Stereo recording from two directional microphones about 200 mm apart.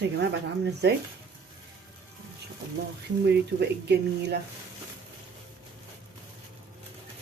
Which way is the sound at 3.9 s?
55° right (ahead or behind).